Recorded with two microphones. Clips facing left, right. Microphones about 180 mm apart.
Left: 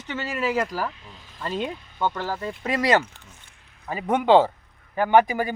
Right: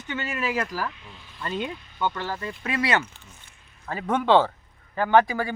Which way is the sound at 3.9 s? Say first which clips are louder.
Left 2 dB; 15° left (ahead or behind).